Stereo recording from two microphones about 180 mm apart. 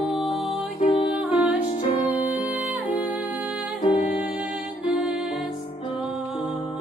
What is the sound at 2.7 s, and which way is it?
Music, 10° right (ahead or behind).